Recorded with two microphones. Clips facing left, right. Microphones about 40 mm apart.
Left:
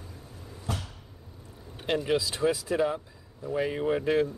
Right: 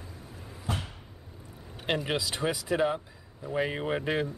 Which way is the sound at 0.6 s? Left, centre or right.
Right.